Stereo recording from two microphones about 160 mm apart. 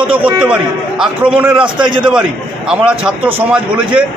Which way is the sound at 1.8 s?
30° right (ahead or behind).